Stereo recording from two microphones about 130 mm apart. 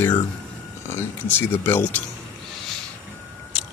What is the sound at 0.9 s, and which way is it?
Speech, 15° left (ahead or behind).